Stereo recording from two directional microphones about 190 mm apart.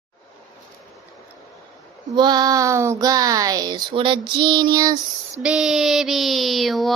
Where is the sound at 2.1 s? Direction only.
20° right (ahead or behind).